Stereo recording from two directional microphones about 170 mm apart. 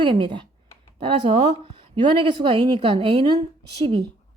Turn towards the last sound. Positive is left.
turn(degrees=-30)  # may be behind; listen again after turning